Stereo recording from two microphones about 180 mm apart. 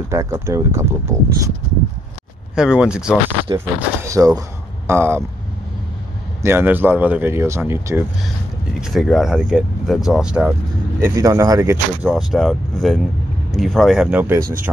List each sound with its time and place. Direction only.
0.1 s speech: 15° right (ahead or behind)
2.5 s speech: 5° right (ahead or behind)
3.5 s speech: 15° right (ahead or behind)
6.4 s speech: 10° right (ahead or behind)
8.7 s speech: centre (ahead or behind)
11.0 s speech: 15° right (ahead or behind)
12.0 s speech: centre (ahead or behind)